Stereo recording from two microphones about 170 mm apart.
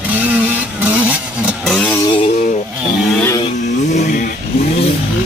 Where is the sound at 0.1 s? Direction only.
10° right (ahead or behind).